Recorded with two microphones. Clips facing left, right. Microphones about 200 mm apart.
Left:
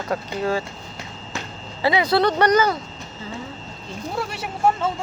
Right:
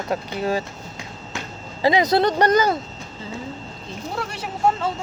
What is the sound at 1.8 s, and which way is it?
Speech, 40° right (ahead or behind).